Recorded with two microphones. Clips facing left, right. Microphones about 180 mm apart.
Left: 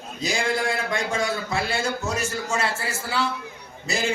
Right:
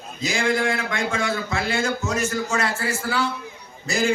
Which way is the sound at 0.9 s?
35° left (ahead or behind).